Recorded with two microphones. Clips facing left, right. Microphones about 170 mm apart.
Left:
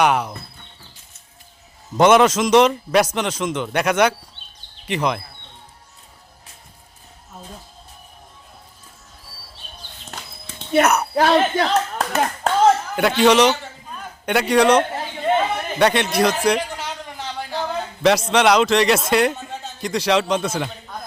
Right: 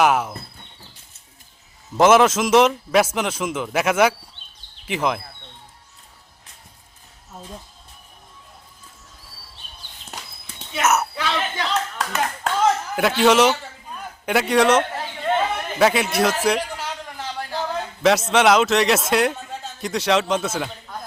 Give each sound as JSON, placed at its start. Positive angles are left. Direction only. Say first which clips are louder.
{"t": 0.0, "sound": "a man's voice", "louder": "even", "side_deg": -5}
{"t": 2.0, "sound": "a man's voice", "louder": "left 1 dB", "side_deg": 0}
{"t": 10.8, "sound": "a man's voice", "louder": "left 1 dB", "side_deg": -5}
{"t": 11.1, "sound": "speech", "louder": "left 9 dB", "side_deg": 50}
{"t": 13.0, "sound": "a man's voice", "louder": "even", "side_deg": 0}